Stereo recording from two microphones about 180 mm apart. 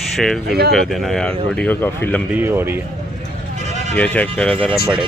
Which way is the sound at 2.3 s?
10° right (ahead or behind).